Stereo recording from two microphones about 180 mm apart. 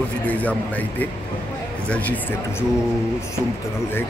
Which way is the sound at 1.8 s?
10° left (ahead or behind).